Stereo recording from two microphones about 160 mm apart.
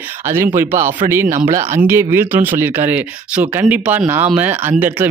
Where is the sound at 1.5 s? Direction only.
45° right (ahead or behind).